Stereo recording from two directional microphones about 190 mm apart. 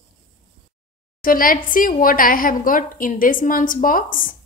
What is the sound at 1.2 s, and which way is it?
Speech, 50° left (ahead or behind).